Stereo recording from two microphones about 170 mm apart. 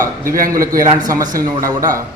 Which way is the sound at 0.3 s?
55° right (ahead or behind).